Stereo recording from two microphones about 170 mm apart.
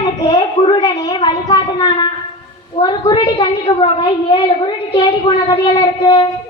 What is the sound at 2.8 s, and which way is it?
A woman's voice, 25° left (ahead or behind).